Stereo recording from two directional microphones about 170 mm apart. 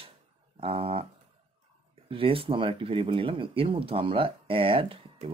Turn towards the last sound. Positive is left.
turn(degrees=-30)  # may be behind; listen again after turning